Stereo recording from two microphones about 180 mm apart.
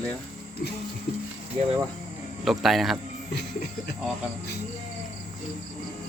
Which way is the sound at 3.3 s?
60° left (ahead or behind).